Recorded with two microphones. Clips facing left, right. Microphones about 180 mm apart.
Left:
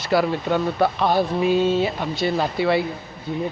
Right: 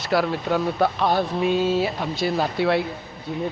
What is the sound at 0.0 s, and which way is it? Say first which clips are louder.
Speech: left 2 dB; centre (ahead or behind).